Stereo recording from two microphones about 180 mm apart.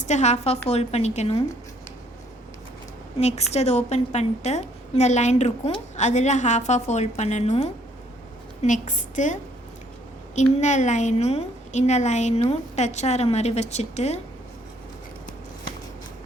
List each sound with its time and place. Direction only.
0.0 s a woman's voice: 40° left (ahead or behind)
3.2 s a woman's voice: 35° left (ahead or behind)